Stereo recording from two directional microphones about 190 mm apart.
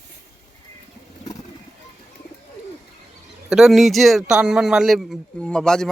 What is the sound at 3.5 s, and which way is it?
Speech, centre (ahead or behind).